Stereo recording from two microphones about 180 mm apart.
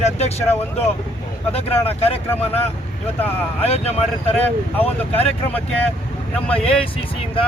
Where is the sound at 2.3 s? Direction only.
10° left (ahead or behind).